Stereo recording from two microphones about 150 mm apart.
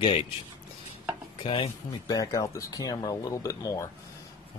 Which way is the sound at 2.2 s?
20° left (ahead or behind).